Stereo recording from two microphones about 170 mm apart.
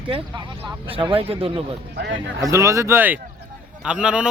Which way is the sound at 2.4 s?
20° right (ahead or behind).